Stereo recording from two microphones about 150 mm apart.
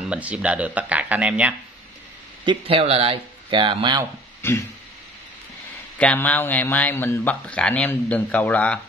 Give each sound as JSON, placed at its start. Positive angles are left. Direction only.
{"t": 0.1, "sound": "speech", "side_deg": -10}
{"t": 2.4, "sound": "speech", "side_deg": -40}
{"t": 4.4, "sound": "a sound", "side_deg": 15}
{"t": 5.9, "sound": "speech", "side_deg": 10}